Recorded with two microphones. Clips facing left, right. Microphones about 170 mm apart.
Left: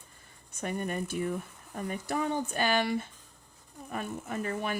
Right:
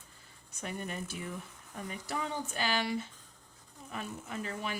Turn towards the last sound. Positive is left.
turn(degrees=50)  # may be behind; listen again after turning